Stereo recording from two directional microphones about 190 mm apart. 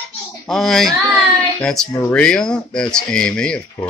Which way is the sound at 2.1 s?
5° left (ahead or behind).